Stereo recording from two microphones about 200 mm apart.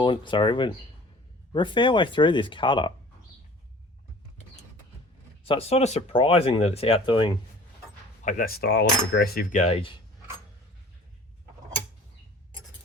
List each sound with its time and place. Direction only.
0.0 s speech: 25° left (ahead or behind)
5.5 s speech: 30° left (ahead or behind)
8.2 s cutlery: 40° left (ahead or behind)